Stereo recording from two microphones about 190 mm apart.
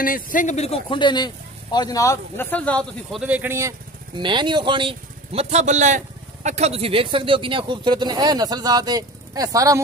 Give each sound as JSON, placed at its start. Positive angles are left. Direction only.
{"t": 0.0, "sound": "a man's voice", "side_deg": 45}
{"t": 4.2, "sound": "speech", "side_deg": -25}